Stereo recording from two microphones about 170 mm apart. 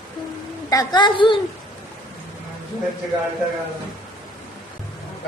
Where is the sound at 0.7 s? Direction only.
25° left (ahead or behind).